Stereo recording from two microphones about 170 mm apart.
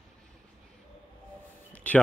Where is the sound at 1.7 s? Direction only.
10° left (ahead or behind).